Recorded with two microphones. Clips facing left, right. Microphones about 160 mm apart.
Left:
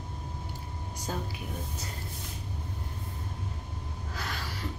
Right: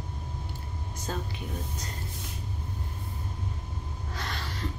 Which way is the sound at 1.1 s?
10° left (ahead or behind).